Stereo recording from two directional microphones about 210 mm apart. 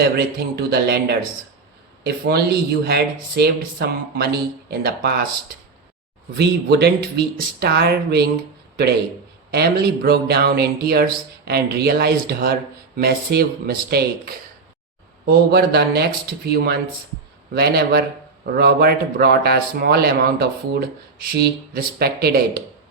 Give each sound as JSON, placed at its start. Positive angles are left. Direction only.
{"t": 0.0, "sound": "speech", "side_deg": -50}
{"t": 6.3, "sound": "speech", "side_deg": -50}
{"t": 8.7, "sound": "a sound", "side_deg": -50}
{"t": 9.5, "sound": "speech", "side_deg": -50}